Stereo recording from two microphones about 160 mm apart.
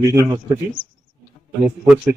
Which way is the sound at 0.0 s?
20° right (ahead or behind).